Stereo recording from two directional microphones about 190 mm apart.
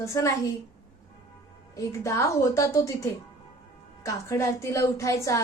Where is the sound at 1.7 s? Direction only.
15° left (ahead or behind).